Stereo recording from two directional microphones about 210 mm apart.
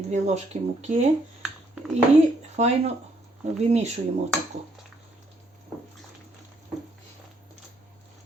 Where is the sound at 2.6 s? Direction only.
30° right (ahead or behind).